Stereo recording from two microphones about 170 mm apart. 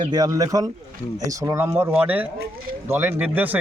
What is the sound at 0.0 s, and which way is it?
A man's voice, 25° right (ahead or behind).